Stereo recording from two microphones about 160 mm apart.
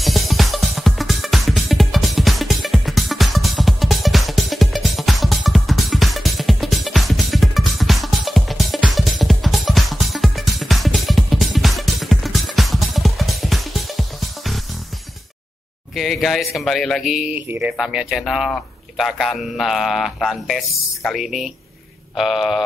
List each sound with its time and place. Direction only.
0.0 s music: centre (ahead or behind)
15.9 s speech: centre (ahead or behind)